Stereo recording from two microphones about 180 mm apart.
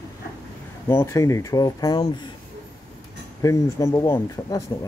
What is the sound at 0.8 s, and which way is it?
Speech, 15° left (ahead or behind).